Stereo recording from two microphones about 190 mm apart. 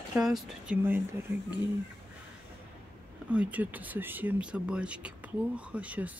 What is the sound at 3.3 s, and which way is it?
Speech, 5° right (ahead or behind).